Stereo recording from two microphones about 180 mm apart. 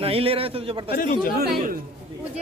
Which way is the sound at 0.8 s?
50° left (ahead or behind).